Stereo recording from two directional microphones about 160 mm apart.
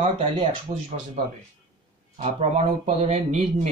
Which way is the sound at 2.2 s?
45° right (ahead or behind).